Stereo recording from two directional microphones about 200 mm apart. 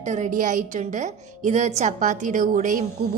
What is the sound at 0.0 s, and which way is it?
A woman's voice, 35° right (ahead or behind).